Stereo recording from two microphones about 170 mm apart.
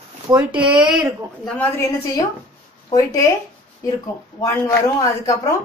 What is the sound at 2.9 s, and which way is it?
Speech, 20° left (ahead or behind).